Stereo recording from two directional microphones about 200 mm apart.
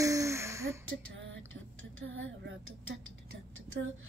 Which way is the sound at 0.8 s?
85° right.